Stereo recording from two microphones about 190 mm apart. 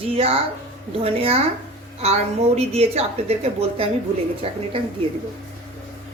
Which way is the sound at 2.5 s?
35° right (ahead or behind).